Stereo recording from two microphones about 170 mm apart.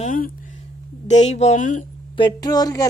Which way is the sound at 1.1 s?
40° left (ahead or behind).